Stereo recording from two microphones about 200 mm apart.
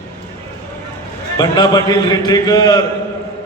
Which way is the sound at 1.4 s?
20° left (ahead or behind).